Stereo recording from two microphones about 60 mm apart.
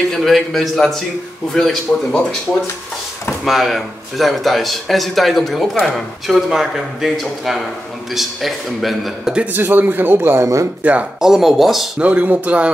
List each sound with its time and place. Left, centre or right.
0.1 s a man's voice: centre
3.4 s a man's voice: centre
9.5 s a man's voice: right
10.4 s speech: right
10.8 s speech: right
11.1 s a man's voice: centre
12.0 s speech: right